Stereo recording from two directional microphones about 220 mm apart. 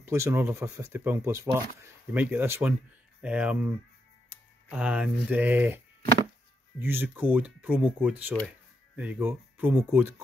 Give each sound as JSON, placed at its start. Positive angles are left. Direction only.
{"t": 0.0, "sound": "speech", "side_deg": -10}
{"t": 6.8, "sound": "speech", "side_deg": -10}